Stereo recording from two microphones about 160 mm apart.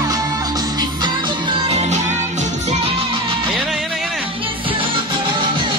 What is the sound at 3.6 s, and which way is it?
Music, centre (ahead or behind).